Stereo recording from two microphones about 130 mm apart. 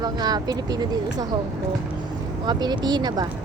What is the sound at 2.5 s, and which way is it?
Speech, 35° right (ahead or behind).